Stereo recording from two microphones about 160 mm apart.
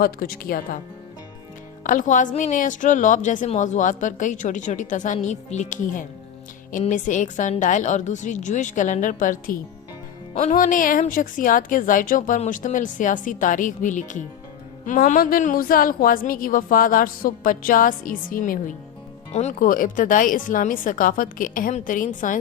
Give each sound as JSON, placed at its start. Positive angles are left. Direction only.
{"t": 0.0, "sound": "a woman's voice", "side_deg": 65}
{"t": 1.8, "sound": "a woman's voice", "side_deg": 55}
{"t": 19.3, "sound": "a woman's voice", "side_deg": 45}